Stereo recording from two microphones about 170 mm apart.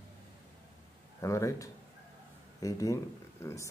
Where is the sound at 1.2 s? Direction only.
20° left (ahead or behind).